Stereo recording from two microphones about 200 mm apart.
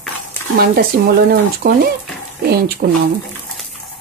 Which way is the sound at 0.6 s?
50° right (ahead or behind).